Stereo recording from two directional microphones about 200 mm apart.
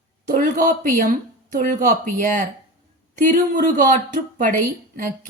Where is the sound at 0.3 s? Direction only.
45° right (ahead or behind).